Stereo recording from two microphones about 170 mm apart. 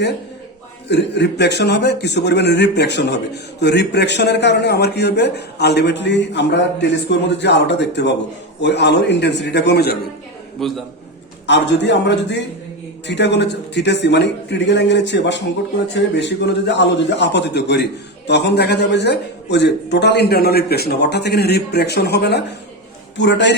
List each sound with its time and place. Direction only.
0.9 s a man's voice: 90° left; by 10.0 s 70° left (ahead or behind)
10.6 s a man's voice: centre (ahead or behind)
11.4 s a man's voice: 90° left